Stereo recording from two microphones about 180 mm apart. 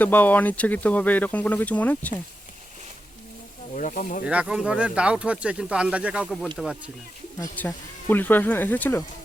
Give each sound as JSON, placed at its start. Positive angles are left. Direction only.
{"t": 0.0, "sound": "speech", "side_deg": 10}
{"t": 3.8, "sound": "speech", "side_deg": 45}
{"t": 4.3, "sound": "speech", "side_deg": -5}
{"t": 7.3, "sound": "speech", "side_deg": 15}